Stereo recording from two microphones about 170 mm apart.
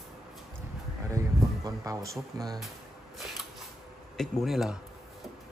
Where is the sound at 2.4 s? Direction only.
Centre (ahead or behind).